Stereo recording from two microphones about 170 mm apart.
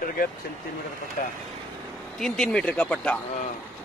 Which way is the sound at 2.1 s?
5° left (ahead or behind).